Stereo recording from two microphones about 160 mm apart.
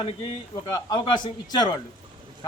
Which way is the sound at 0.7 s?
25° left (ahead or behind).